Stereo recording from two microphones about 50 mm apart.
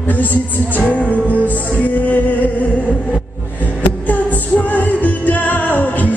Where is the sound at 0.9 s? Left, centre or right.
Left.